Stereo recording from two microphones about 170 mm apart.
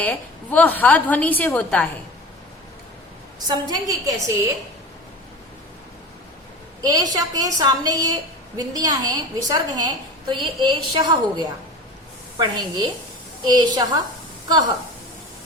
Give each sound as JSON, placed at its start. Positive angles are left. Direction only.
{"t": 0.0, "sound": "a woman's voice", "side_deg": 10}
{"t": 3.4, "sound": "a woman's voice", "side_deg": -25}
{"t": 6.8, "sound": "a woman's voice", "side_deg": -20}